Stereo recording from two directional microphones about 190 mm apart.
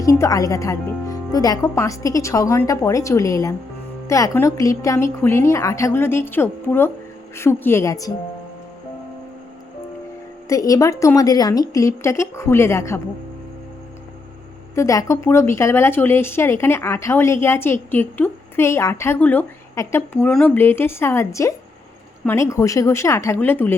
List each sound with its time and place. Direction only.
0.0 s a woman's voice: 15° left (ahead or behind)
10.5 s a woman's voice: 15° left (ahead or behind)
14.8 s a woman's voice: 15° left (ahead or behind)